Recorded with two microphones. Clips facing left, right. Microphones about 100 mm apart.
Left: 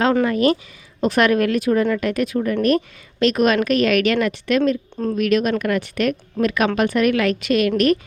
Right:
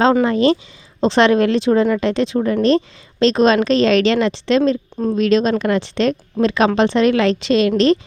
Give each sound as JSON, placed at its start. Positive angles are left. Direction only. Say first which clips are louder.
{"t": 0.0, "sound": "speech", "louder": "right 3 dB", "side_deg": -25}